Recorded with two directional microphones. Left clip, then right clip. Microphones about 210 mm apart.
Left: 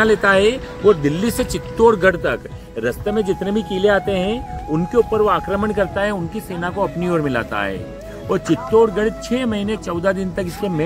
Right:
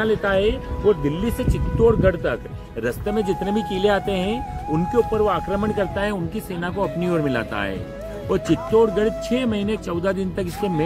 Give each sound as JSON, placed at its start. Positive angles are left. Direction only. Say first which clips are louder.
{"t": 0.0, "sound": "speech", "louder": "left 6 dB", "side_deg": 55}
{"t": 2.8, "sound": "speech", "louder": "left 3 dB", "side_deg": 30}
{"t": 4.9, "sound": "speech", "louder": "left 4 dB", "side_deg": 55}
{"t": 5.9, "sound": "speech", "louder": "left 4 dB", "side_deg": 10}